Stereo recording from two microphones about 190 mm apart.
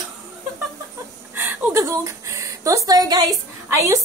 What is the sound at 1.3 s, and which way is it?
Speech, 10° right (ahead or behind).